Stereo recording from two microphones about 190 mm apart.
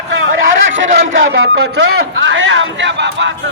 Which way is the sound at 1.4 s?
65° right (ahead or behind).